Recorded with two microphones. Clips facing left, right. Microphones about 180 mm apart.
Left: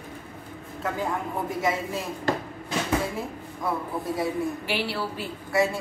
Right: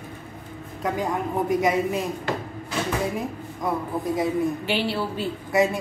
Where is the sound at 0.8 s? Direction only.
15° right (ahead or behind).